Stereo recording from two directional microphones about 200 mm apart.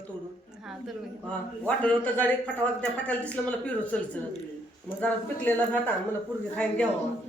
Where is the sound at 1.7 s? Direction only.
5° left (ahead or behind).